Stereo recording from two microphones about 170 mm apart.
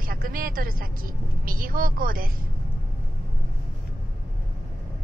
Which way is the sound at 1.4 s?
55° right (ahead or behind).